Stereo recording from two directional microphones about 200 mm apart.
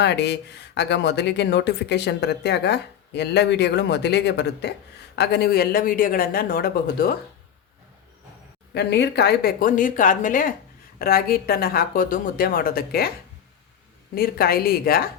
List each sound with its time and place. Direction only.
0.0 s speech: 55° left (ahead or behind)
8.7 s speech: 55° left (ahead or behind)
14.2 s speech: 50° left (ahead or behind)